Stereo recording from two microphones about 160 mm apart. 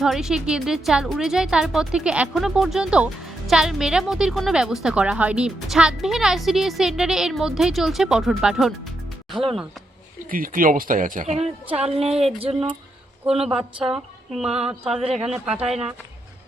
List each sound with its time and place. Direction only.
0.0 s a woman's voice: 5° right (ahead or behind)
10.2 s a woman's voice: 60° right (ahead or behind); by 11.8 s 45° right (ahead or behind)
11.9 s a sound: 40° right (ahead or behind)
13.9 s a woman's voice: 5° right (ahead or behind)